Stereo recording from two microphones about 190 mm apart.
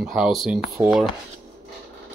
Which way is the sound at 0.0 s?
Centre (ahead or behind).